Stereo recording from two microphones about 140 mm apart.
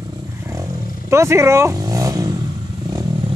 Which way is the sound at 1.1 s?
20° right (ahead or behind).